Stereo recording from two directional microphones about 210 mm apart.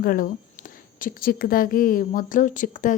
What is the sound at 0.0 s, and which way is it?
A woman's voice, 45° left (ahead or behind).